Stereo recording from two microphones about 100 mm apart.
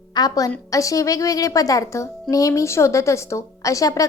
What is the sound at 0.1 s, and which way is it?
A woman's voice, 40° left (ahead or behind).